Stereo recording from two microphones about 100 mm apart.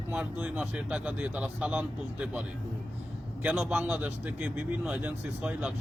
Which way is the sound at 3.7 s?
15° right (ahead or behind).